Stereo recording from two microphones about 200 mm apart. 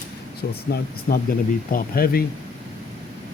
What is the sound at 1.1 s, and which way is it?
Speech, 50° left (ahead or behind).